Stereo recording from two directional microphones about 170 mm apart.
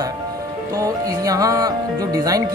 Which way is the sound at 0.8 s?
20° right (ahead or behind).